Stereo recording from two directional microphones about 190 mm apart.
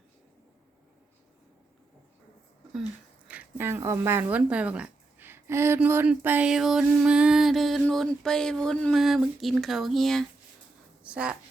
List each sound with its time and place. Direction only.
3.2 s a woman's voice: 10° right (ahead or behind)